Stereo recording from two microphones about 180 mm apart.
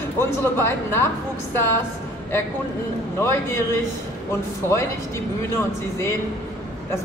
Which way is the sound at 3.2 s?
15° left (ahead or behind).